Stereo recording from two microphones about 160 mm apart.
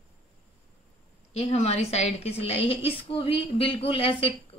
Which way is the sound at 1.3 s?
45° left (ahead or behind).